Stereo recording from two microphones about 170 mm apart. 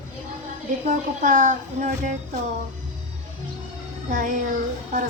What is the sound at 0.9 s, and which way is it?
A child's voice, 50° right (ahead or behind).